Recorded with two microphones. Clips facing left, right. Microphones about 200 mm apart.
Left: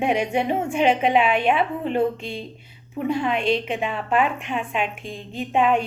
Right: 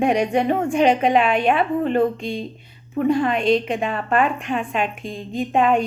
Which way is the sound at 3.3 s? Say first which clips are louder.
Right 4 dB; 50° right (ahead or behind).